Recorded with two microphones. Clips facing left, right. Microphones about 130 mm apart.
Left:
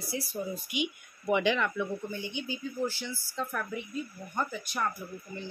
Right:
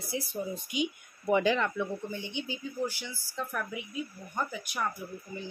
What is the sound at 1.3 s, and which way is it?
Speech, 40° right (ahead or behind).